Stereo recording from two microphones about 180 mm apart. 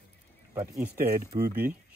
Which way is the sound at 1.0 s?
55° right (ahead or behind).